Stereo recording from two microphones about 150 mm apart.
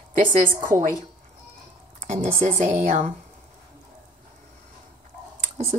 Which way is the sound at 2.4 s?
50° right (ahead or behind).